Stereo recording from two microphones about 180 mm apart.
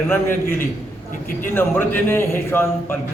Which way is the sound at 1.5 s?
10° left (ahead or behind).